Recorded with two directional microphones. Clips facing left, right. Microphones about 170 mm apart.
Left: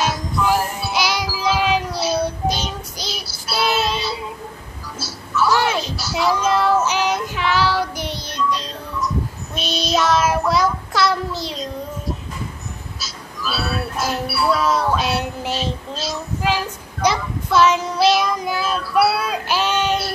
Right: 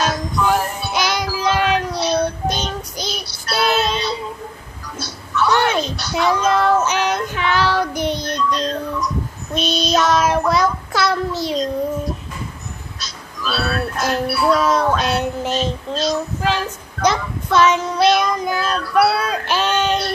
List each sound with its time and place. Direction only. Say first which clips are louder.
0.0 s child singing: right 1 dB; 5° left (ahead or behind)
7.9 s child singing: right 7 dB; 50° right (ahead or behind)
8.4 s music: right 3 dB; 5° left (ahead or behind)
9.6 s child singing: right 2 dB; 5° left (ahead or behind)
13.0 s music: right 1 dB; 5° left (ahead or behind)